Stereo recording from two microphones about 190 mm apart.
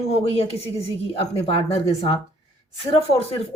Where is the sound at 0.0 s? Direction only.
35° left (ahead or behind).